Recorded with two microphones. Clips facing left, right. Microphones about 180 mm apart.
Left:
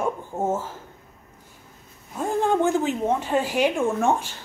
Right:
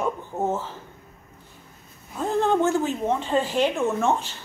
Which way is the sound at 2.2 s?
10° left (ahead or behind).